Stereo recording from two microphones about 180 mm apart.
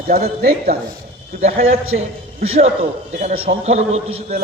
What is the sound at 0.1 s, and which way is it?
Speech, 55° right (ahead or behind).